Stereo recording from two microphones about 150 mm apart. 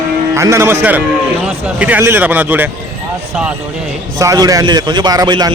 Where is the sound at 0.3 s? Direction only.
20° right (ahead or behind).